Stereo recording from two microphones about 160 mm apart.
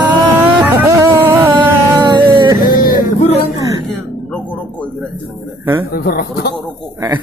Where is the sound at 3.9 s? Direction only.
10° left (ahead or behind).